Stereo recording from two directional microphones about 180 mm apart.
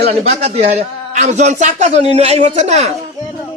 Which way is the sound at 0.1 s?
40° right (ahead or behind).